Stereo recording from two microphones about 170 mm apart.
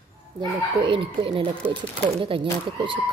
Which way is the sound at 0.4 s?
30° right (ahead or behind).